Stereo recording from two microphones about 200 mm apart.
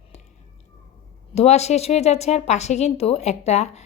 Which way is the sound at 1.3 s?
30° left (ahead or behind).